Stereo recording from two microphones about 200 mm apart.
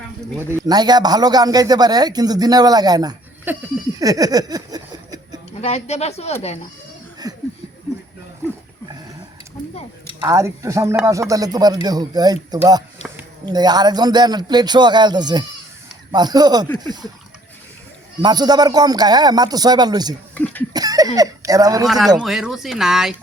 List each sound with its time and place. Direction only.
0.3 s a man's voice: 15° right (ahead or behind)
4.0 s a sound: 15° right (ahead or behind)
5.5 s speech: 30° left (ahead or behind)
10.2 s a man's voice: 15° right (ahead or behind)
18.2 s a man's voice: 20° right (ahead or behind)
20.3 s speech: 10° left (ahead or behind)
20.7 s a sound: 20° right (ahead or behind)
21.2 s speech: 15° right (ahead or behind)
21.8 s speech: centre (ahead or behind)